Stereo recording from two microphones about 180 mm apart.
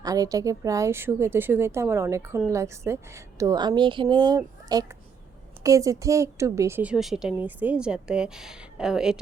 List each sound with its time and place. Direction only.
0.0 s a woman's voice: 20° right (ahead or behind); by 9.2 s 5° right (ahead or behind)